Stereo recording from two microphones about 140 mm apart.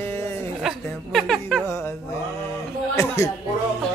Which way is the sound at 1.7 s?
20° left (ahead or behind).